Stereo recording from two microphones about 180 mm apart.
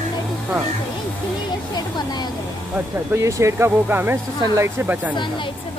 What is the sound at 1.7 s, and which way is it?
Speech, 25° left (ahead or behind).